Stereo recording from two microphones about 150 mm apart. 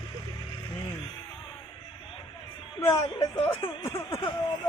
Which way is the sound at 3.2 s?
40° left (ahead or behind).